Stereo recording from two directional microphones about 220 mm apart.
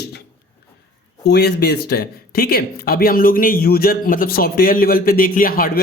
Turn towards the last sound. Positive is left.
turn(degrees=40)  # may be behind; listen again after turning